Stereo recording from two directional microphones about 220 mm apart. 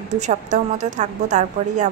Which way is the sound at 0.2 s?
35° right (ahead or behind).